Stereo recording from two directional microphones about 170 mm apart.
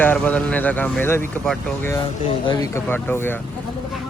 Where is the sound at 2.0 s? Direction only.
30° left (ahead or behind); by 3.4 s 15° left (ahead or behind).